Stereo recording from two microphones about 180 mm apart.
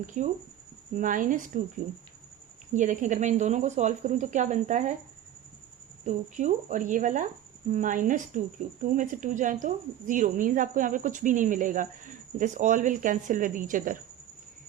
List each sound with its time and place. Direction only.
0.0 s speech: 45° right (ahead or behind)
2.7 s speech: 45° right (ahead or behind)
6.1 s speech: 45° right (ahead or behind)